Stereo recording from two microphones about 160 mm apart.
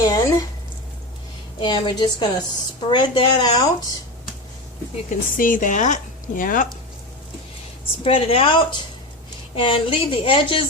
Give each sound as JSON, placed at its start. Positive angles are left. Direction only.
{"t": 0.0, "sound": "a sound", "side_deg": 20}
{"t": 1.5, "sound": "speech", "side_deg": 30}
{"t": 5.0, "sound": "speech", "side_deg": 55}
{"t": 8.0, "sound": "a woman's voice", "side_deg": 35}